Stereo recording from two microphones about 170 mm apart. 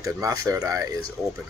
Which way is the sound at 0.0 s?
20° right (ahead or behind).